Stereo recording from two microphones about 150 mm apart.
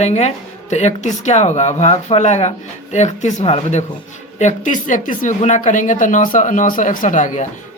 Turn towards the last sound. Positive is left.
turn(degrees=60)  # may be behind; listen again after turning